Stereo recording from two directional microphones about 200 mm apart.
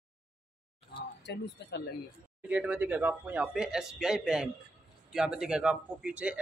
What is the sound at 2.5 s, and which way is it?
A man's voice, 5° right (ahead or behind).